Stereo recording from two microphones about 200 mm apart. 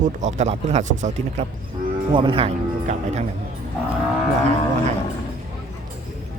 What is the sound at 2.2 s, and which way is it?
Speech, 25° right (ahead or behind).